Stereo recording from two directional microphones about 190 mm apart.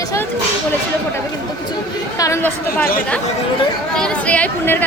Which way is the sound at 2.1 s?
15° left (ahead or behind).